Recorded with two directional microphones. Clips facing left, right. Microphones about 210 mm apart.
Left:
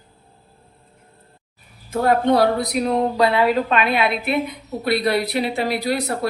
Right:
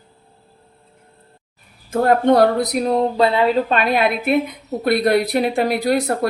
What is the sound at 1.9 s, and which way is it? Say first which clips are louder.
Speech: right 3 dB; 50° right (ahead or behind).